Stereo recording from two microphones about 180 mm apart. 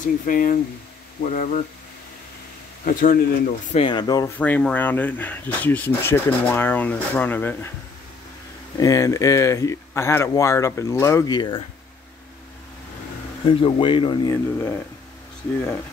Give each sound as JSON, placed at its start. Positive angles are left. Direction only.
{"t": 0.0, "sound": "speech", "side_deg": 50}
{"t": 2.8, "sound": "speech", "side_deg": 50}
{"t": 3.7, "sound": "speech", "side_deg": 25}
{"t": 4.4, "sound": "speech", "side_deg": 5}
{"t": 8.7, "sound": "speech", "side_deg": 20}
{"t": 13.5, "sound": "speech", "side_deg": 30}